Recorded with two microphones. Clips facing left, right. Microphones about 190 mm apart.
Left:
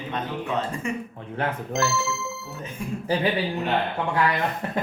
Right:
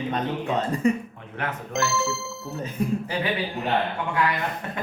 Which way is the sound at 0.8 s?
35° right (ahead or behind).